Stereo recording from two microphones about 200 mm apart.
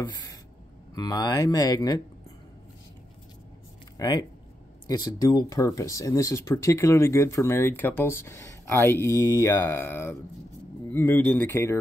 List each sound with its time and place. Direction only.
0.9 s speech: 20° left (ahead or behind)
4.0 s speech: 20° left (ahead or behind)